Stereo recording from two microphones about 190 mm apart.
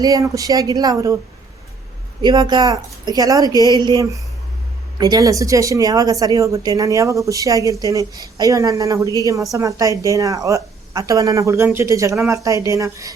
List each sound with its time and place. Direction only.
0.0 s a woman's voice: 20° right (ahead or behind)
2.2 s a woman's voice: 20° right (ahead or behind)